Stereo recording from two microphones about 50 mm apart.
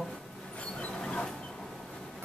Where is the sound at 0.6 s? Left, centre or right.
Left.